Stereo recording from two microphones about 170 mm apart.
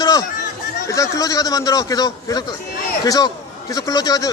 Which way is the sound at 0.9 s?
20° left (ahead or behind).